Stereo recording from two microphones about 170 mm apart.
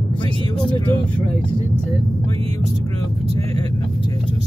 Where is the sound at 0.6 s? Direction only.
30° left (ahead or behind).